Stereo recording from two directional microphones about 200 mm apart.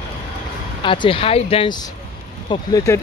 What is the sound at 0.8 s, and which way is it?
Speech, 25° left (ahead or behind).